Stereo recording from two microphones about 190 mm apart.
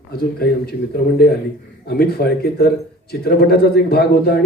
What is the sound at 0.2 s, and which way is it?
Speech, 55° left (ahead or behind).